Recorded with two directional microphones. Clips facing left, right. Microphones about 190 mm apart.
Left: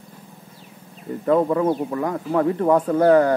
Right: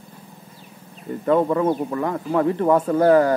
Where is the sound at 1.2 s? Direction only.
5° left (ahead or behind).